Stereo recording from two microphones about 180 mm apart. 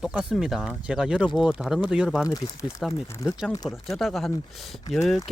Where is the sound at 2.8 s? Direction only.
Centre (ahead or behind).